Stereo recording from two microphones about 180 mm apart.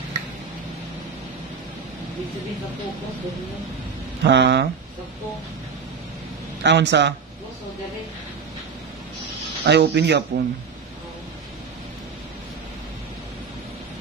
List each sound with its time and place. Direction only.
4.2 s speech: 75° right (ahead or behind)
6.6 s speech: 75° right (ahead or behind)
9.7 s speech: 70° right (ahead or behind)